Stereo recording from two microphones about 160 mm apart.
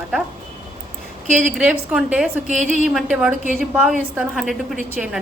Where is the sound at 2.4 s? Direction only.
50° right (ahead or behind).